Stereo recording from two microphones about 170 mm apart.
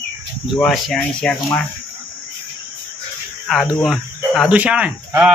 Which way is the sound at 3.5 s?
Centre (ahead or behind).